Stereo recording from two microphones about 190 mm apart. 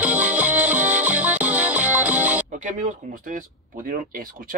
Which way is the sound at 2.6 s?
40° right (ahead or behind).